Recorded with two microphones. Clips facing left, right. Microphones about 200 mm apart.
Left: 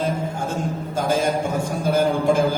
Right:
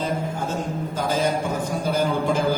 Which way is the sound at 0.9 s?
50° left (ahead or behind).